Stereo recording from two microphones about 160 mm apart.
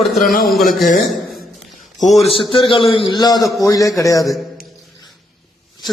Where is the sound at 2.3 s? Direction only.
35° left (ahead or behind).